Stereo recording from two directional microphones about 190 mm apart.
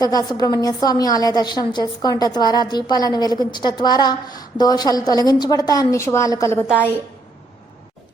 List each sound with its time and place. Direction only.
0.0 s a woman's voice: 20° left (ahead or behind)